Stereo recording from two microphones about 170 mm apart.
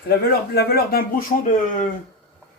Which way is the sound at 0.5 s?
70° left (ahead or behind).